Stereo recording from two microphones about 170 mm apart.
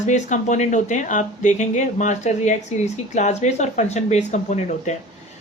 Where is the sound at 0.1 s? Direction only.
45° left (ahead or behind).